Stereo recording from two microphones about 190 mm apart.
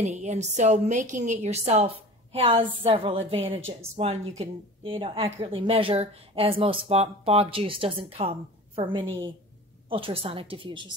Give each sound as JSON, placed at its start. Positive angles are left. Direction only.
{"t": 0.0, "sound": "a woman's voice", "side_deg": -35}